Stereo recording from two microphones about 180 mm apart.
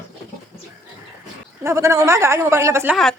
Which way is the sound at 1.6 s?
15° right (ahead or behind).